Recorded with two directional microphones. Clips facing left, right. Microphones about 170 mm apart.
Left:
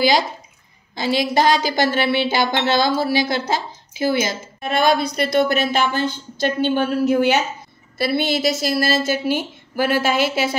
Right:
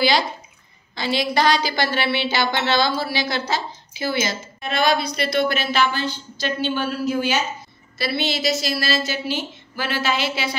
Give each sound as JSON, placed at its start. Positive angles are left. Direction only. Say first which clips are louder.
{"t": 0.9, "sound": "a woman's voice", "louder": "left 3 dB", "side_deg": 45}